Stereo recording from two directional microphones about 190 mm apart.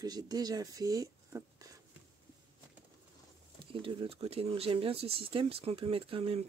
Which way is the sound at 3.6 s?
25° right (ahead or behind).